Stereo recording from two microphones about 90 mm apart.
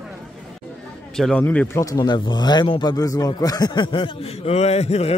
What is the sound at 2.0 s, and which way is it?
Speech, 55° left (ahead or behind).